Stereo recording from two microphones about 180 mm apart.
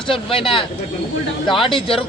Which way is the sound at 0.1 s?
30° left (ahead or behind).